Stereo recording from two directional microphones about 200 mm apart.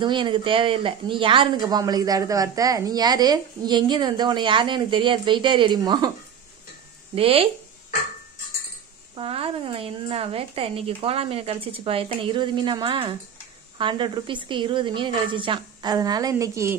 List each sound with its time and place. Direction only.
0.0 s speech: 25° right (ahead or behind)
7.2 s speech: 30° right (ahead or behind)
9.1 s speech: 30° right (ahead or behind)